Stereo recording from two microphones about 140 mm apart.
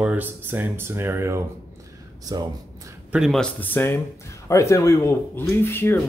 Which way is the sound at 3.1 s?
Centre (ahead or behind).